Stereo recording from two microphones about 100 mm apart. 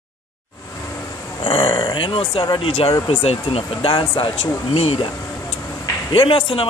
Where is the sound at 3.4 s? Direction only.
65° left (ahead or behind); by 5.0 s 90° left.